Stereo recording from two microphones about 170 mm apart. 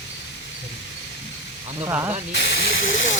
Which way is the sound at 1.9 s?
15° right (ahead or behind).